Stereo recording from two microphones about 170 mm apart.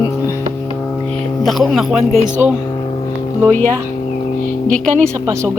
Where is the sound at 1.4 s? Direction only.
Centre (ahead or behind).